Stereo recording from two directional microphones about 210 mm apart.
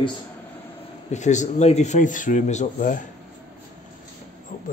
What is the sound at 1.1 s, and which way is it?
Speech, 35° left (ahead or behind).